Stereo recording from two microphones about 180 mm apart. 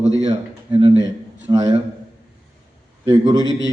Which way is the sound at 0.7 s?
35° right (ahead or behind).